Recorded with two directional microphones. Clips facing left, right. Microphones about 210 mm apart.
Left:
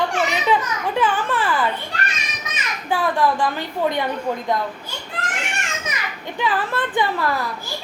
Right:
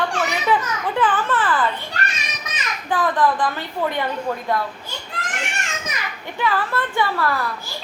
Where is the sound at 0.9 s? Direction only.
10° left (ahead or behind).